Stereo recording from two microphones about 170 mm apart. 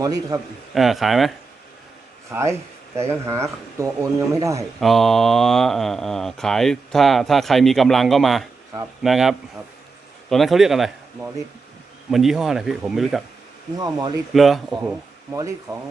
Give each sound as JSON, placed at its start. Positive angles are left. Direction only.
{"t": 0.0, "sound": "a man's voice", "side_deg": -20}
{"t": 0.7, "sound": "speech", "side_deg": 0}
{"t": 2.3, "sound": "speech", "side_deg": -15}
{"t": 4.8, "sound": "speech", "side_deg": 0}
{"t": 13.7, "sound": "a man's voice", "side_deg": -25}
{"t": 14.3, "sound": "speech", "side_deg": 0}
{"t": 15.7, "sound": "a man's voice", "side_deg": -20}